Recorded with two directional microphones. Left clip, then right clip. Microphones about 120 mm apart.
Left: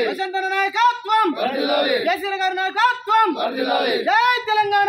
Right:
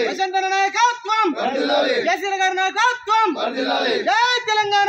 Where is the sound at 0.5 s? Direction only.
15° right (ahead or behind).